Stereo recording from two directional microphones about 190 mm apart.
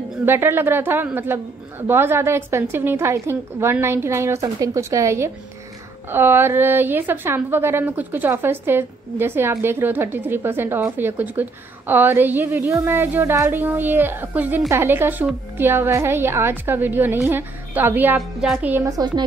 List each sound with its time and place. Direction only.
0.2 s a woman's voice: 10° right (ahead or behind)
18.9 s speech: 20° right (ahead or behind)